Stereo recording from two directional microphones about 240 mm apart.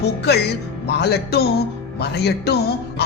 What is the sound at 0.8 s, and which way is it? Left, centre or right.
A woman's voice, left.